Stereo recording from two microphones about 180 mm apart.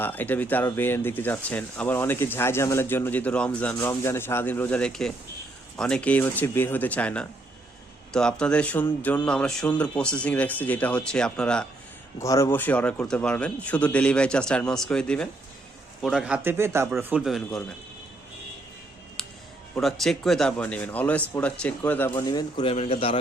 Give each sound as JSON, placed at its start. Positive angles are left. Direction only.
{"t": 0.0, "sound": "speech", "side_deg": 10}
{"t": 12.2, "sound": "speech", "side_deg": 15}
{"t": 19.7, "sound": "speech", "side_deg": 0}
{"t": 22.1, "sound": "a man's voice", "side_deg": 20}